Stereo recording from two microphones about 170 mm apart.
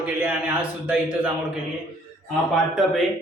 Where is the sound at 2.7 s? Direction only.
Centre (ahead or behind).